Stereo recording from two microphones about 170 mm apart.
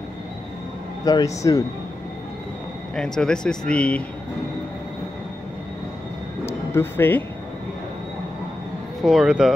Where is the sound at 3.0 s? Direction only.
5° left (ahead or behind).